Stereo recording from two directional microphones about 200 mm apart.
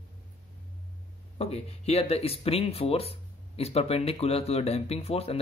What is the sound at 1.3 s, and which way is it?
Speech, 30° left (ahead or behind).